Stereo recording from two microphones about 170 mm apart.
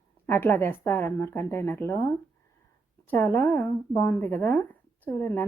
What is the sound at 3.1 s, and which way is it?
Speech, 15° left (ahead or behind).